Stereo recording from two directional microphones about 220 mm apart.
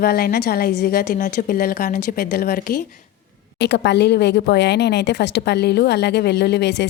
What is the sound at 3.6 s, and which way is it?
A woman's voice, 50° left (ahead or behind).